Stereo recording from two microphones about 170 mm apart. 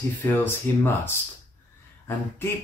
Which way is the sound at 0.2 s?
10° left (ahead or behind).